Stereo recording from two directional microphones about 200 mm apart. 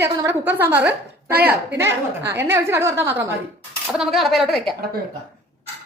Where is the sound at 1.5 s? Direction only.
10° right (ahead or behind).